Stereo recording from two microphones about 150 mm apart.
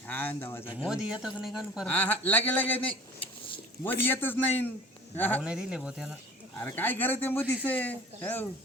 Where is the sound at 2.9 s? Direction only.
35° left (ahead or behind).